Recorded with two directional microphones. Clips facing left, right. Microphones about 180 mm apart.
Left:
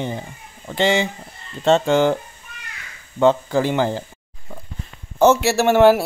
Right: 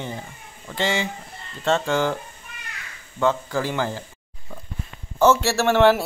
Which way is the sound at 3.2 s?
25° left (ahead or behind).